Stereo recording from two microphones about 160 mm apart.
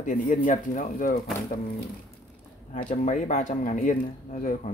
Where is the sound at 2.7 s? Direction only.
50° left (ahead or behind).